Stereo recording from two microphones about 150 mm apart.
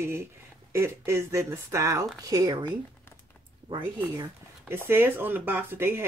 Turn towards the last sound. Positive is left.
turn(degrees=-15)  # may be behind; listen again after turning